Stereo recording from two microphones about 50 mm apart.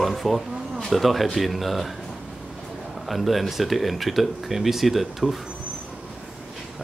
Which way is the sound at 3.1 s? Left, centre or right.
Centre.